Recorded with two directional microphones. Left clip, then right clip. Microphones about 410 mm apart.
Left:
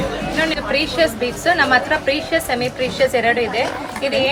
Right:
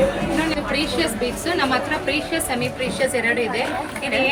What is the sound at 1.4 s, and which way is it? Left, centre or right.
Speech, centre.